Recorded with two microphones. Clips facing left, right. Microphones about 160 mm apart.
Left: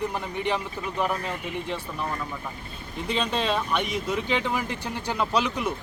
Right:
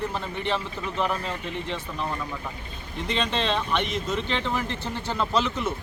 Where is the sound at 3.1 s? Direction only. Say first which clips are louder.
Even; 10° left (ahead or behind).